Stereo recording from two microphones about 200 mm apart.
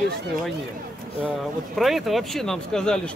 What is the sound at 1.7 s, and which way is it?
Speech, centre (ahead or behind).